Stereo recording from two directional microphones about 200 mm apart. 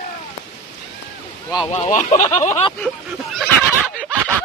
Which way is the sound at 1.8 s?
35° left (ahead or behind).